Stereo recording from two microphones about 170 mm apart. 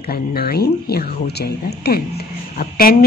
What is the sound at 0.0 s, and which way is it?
A woman's voice, 65° left (ahead or behind).